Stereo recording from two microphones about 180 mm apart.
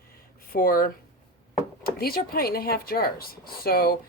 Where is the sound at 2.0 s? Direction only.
55° left (ahead or behind).